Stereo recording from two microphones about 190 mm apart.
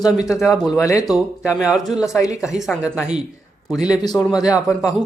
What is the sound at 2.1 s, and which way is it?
Speech, 15° left (ahead or behind).